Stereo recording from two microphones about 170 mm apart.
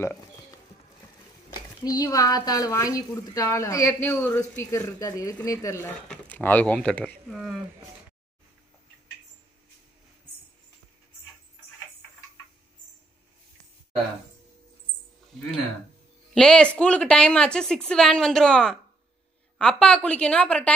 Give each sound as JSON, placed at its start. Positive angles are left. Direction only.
{"t": 1.5, "sound": "speech", "side_deg": 20}
{"t": 16.3, "sound": "a woman's voice", "side_deg": 5}